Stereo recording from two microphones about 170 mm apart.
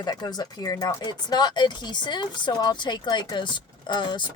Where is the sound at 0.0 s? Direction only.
25° left (ahead or behind).